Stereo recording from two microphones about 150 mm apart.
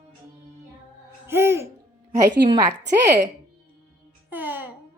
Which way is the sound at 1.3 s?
15° right (ahead or behind).